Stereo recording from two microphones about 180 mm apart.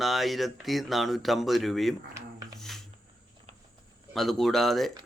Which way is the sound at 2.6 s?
Centre (ahead or behind).